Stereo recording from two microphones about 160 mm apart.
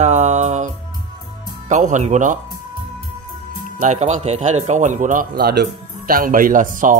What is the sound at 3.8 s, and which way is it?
A man's voice, 45° right (ahead or behind).